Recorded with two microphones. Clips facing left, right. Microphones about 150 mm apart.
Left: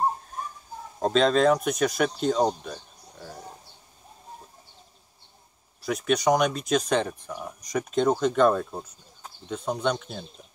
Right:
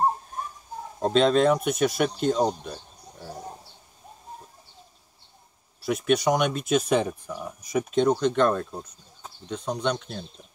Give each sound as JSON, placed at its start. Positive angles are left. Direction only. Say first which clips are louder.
{"t": 0.9, "sound": "speech", "louder": "right 1 dB", "side_deg": 0}
{"t": 5.8, "sound": "speech", "louder": "right 2 dB", "side_deg": 0}